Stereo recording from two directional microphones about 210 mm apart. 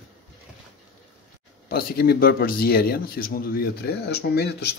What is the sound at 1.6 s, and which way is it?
Speech, 45° left (ahead or behind).